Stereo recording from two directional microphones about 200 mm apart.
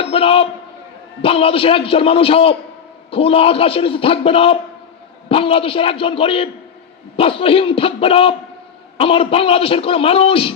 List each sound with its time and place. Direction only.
0.0 s a man's voice: 30° left (ahead or behind)